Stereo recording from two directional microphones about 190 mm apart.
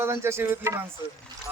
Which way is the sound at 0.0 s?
15° right (ahead or behind).